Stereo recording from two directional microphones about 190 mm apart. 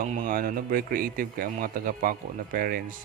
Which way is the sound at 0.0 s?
40° right (ahead or behind).